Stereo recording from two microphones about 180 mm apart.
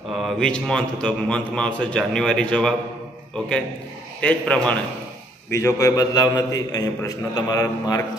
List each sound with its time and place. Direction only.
0.2 s a man's voice: 5° left (ahead or behind); by 8.0 s 20° left (ahead or behind)